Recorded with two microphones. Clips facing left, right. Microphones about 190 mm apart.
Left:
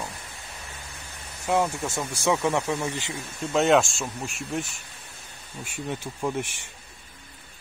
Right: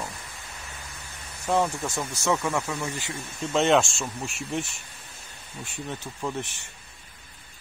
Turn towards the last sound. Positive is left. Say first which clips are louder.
# left 3 dB
turn(degrees=10)  # may be behind; listen again after turning